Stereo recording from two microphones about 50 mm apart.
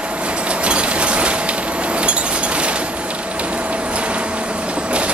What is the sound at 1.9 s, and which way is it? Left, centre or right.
Wind chime, right.